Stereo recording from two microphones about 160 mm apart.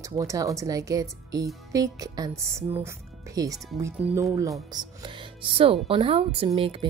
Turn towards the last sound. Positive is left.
turn(degrees=-35)  # may be behind; listen again after turning